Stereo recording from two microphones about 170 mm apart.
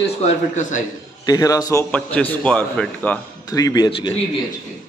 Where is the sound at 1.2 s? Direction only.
20° left (ahead or behind).